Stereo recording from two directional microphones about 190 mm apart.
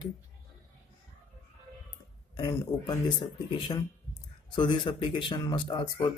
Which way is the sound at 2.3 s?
25° left (ahead or behind).